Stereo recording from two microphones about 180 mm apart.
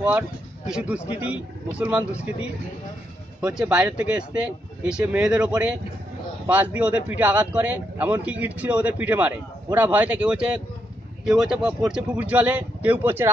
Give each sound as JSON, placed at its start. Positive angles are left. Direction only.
{"t": 0.7, "sound": "speech", "side_deg": -5}
{"t": 3.3, "sound": "speech", "side_deg": -5}